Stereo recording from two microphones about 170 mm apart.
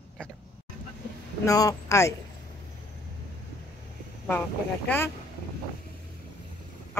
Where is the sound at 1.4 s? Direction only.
20° left (ahead or behind).